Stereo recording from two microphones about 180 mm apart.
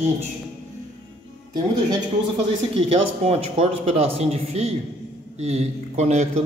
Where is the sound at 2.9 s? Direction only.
35° right (ahead or behind).